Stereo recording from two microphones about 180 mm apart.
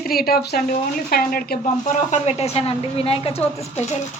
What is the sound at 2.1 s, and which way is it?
Speech, 35° left (ahead or behind).